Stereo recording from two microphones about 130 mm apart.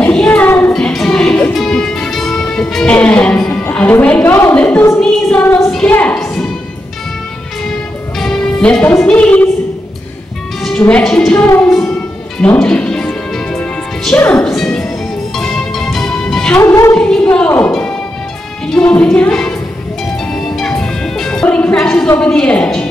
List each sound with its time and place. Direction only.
0.0 s child singing: 10° left (ahead or behind)
0.7 s music: 5° left (ahead or behind)
4.6 s a woman's voice: 10° left (ahead or behind)
5.0 s music: 10° left (ahead or behind)
8.2 s music: 5° left (ahead or behind)
9.0 s a woman's voice: 10° left (ahead or behind)
10.8 s a woman's voice: 10° left (ahead or behind)
11.3 s a woman's voice: 20° left (ahead or behind)
12.4 s music: 5° left (ahead or behind)
16.6 s a woman's voice: 20° left (ahead or behind)
16.9 s speech: 10° left (ahead or behind)
18.7 s music: 10° left (ahead or behind)
22.0 s a woman's voice: 10° left (ahead or behind)